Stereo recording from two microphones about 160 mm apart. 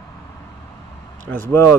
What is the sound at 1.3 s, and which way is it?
Speech, 15° left (ahead or behind).